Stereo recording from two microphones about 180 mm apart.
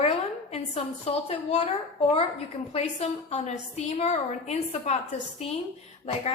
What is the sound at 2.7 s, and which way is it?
A woman's voice, 35° left (ahead or behind).